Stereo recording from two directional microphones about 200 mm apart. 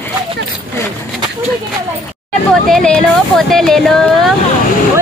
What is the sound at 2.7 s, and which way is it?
Speech, 5° left (ahead or behind).